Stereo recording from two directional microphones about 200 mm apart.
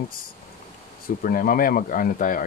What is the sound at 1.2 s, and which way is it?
Speech, 45° left (ahead or behind).